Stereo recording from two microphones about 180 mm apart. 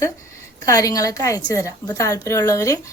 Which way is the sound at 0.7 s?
20° left (ahead or behind).